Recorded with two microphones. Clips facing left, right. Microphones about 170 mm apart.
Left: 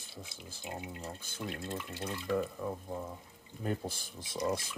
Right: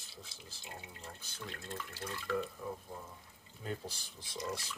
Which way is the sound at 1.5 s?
15° left (ahead or behind).